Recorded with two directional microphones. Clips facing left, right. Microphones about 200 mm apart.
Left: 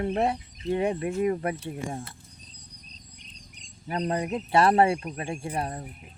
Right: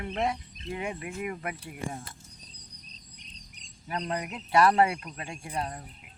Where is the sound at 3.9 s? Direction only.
30° left (ahead or behind).